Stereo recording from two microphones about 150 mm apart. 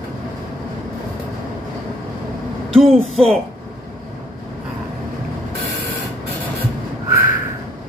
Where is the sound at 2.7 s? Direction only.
Centre (ahead or behind).